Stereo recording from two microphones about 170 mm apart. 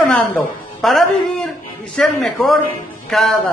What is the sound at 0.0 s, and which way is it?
A woman's voice, 5° left (ahead or behind).